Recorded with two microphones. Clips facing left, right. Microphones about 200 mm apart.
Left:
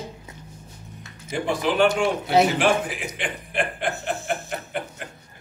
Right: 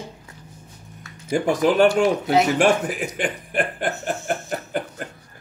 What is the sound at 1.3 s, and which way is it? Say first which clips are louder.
A man's voice: right 5 dB; 45° right (ahead or behind).